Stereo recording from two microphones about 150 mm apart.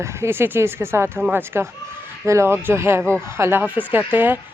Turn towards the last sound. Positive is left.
turn(degrees=-10)  # may be behind; listen again after turning